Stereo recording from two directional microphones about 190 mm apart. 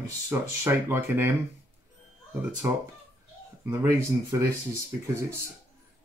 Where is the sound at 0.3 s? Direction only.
10° right (ahead or behind).